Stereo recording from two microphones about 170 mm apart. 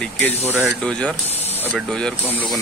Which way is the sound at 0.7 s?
5° left (ahead or behind).